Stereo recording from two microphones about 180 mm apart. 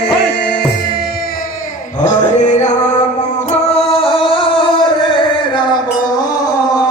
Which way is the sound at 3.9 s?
30° left (ahead or behind).